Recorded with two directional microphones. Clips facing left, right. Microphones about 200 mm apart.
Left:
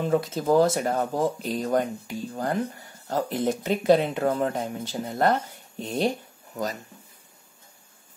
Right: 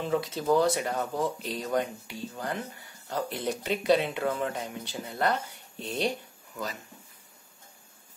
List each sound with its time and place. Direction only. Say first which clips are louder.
0.0 s speech: left 4 dB; 45° left (ahead or behind)